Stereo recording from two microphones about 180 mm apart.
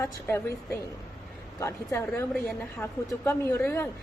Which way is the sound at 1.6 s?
15° left (ahead or behind).